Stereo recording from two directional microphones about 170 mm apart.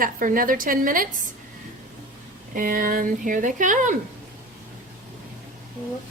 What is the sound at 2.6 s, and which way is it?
Speech, 55° right (ahead or behind).